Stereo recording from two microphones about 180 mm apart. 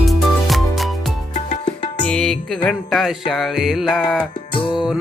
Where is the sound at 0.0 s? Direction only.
Centre (ahead or behind).